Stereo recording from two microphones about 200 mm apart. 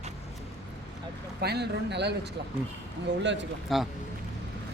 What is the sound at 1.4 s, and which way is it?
Speech, 55° right (ahead or behind).